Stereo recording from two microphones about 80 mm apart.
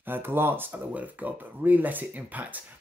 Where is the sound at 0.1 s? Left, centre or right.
Right.